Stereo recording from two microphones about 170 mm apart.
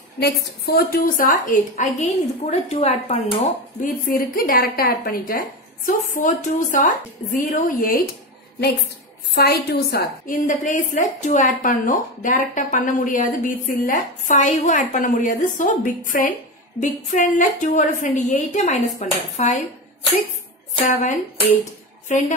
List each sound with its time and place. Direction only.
0.2 s a woman's voice: 65° left (ahead or behind); by 3.2 s 35° left (ahead or behind)
3.8 s a woman's voice: 55° left (ahead or behind)
5.9 s a woman's voice: 50° left (ahead or behind)
9.3 s a woman's voice: 70° left (ahead or behind); by 19.6 s 45° left (ahead or behind)
20.9 s a woman's voice: 45° left (ahead or behind)